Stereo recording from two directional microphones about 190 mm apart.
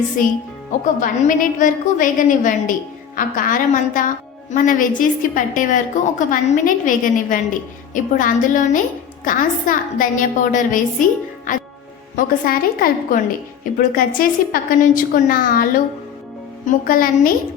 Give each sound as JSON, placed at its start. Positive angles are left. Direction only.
{"t": 0.2, "sound": "a woman's voice", "side_deg": 45}
{"t": 12.1, "sound": "a woman's voice", "side_deg": 45}